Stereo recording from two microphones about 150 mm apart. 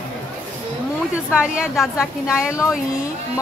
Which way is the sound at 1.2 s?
5° right (ahead or behind).